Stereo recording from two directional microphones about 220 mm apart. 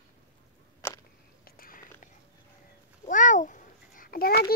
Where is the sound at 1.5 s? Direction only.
40° left (ahead or behind).